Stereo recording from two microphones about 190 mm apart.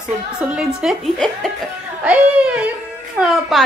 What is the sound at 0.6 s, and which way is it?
Speech, centre (ahead or behind).